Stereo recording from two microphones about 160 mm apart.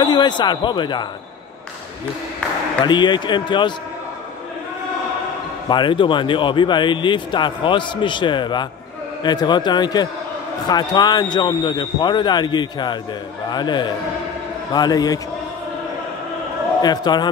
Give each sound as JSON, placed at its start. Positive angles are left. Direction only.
{"t": 0.0, "sound": "a man's voice", "side_deg": 30}
{"t": 2.8, "sound": "a man's voice", "side_deg": 30}
{"t": 5.7, "sound": "a man's voice", "side_deg": 30}
{"t": 16.8, "sound": "a man's voice", "side_deg": 25}